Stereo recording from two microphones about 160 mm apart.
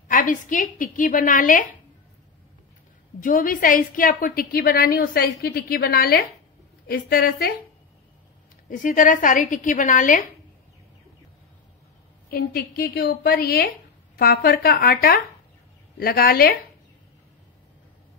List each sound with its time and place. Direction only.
0.1 s a woman's voice: 55° left (ahead or behind)
3.2 s a woman's voice: 60° left (ahead or behind)
8.6 s a woman's voice: 55° left (ahead or behind)
12.3 s a woman's voice: 70° left (ahead or behind)